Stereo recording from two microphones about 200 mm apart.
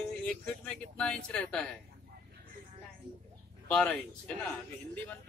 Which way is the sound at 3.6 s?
5° left (ahead or behind).